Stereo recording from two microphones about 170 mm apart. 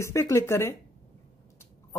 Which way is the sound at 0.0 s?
15° left (ahead or behind).